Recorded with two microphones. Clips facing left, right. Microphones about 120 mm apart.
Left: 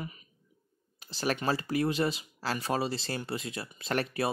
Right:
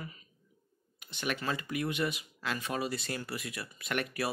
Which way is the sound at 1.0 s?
35° left (ahead or behind).